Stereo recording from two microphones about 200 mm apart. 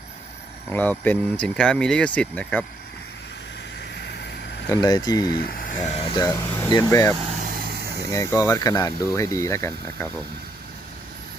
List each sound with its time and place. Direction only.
0.7 s speech: 10° left (ahead or behind)
4.7 s speech: 20° left (ahead or behind)
5.2 s speech: 50° left (ahead or behind); by 7.2 s 15° left (ahead or behind)
7.7 s vehicle: 55° right (ahead or behind)
8.1 s speech: 15° left (ahead or behind)